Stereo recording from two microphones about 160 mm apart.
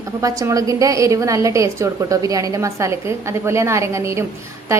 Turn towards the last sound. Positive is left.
turn(degrees=-20)  # may be behind; listen again after turning